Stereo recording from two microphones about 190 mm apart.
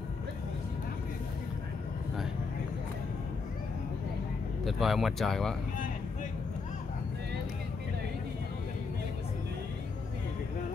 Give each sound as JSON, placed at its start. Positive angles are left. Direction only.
{"t": 4.6, "sound": "speech", "side_deg": 0}